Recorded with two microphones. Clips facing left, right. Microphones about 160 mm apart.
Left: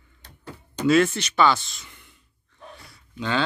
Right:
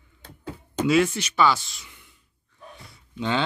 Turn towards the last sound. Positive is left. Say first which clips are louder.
# right 1 dB
turn(degrees=-20)  # may be behind; listen again after turning